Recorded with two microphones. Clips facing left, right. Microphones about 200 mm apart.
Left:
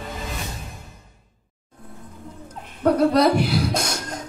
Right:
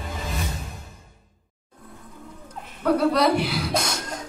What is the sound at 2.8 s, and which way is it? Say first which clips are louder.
Speech: left 3 dB; 45° left (ahead or behind).